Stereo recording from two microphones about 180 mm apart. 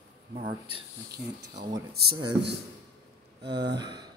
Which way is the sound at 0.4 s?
25° right (ahead or behind).